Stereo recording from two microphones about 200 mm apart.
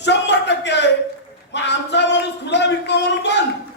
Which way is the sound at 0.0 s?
60° left (ahead or behind).